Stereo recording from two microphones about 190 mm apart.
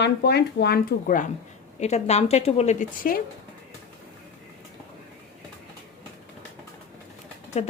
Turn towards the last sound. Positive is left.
turn(degrees=35)  # may be behind; listen again after turning